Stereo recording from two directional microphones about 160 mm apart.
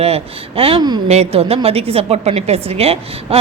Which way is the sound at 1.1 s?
40° right (ahead or behind).